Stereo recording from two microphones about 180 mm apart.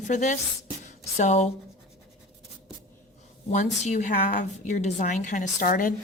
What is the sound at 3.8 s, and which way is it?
A woman's voice, 40° left (ahead or behind).